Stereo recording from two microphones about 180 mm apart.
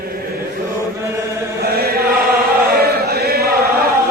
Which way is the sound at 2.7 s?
60° right (ahead or behind).